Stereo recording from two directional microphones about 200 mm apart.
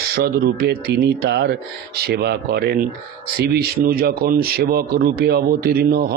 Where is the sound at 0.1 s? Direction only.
55° right (ahead or behind).